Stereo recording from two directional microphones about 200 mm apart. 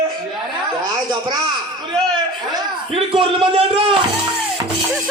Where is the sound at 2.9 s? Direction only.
25° right (ahead or behind).